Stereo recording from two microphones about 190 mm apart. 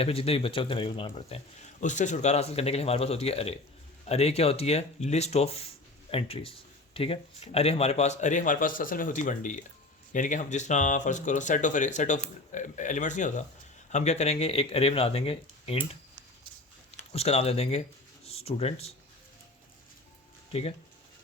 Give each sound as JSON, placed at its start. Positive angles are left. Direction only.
{"t": 0.0, "sound": "speech", "side_deg": 30}
{"t": 1.8, "sound": "speech", "side_deg": 40}
{"t": 17.1, "sound": "speech", "side_deg": 35}
{"t": 20.5, "sound": "speech", "side_deg": 30}